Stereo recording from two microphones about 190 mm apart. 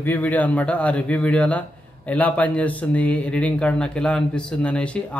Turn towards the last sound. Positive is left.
turn(degrees=5)  # may be behind; listen again after turning